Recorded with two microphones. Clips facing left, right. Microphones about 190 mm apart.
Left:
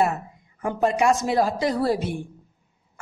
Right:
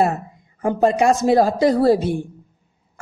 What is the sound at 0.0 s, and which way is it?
A woman's voice, 35° right (ahead or behind).